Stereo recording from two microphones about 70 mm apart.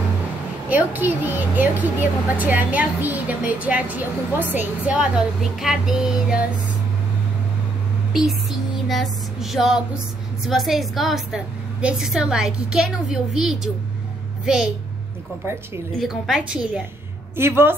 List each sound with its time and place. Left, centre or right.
0.7 s a woman's voice: right
4.9 s a woman's voice: centre
8.1 s a sound: centre
10.4 s a woman's voice: centre
16.3 s a woman's voice: centre
17.4 s a woman's voice: right